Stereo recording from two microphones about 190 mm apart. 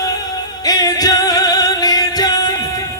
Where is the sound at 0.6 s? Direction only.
20° left (ahead or behind).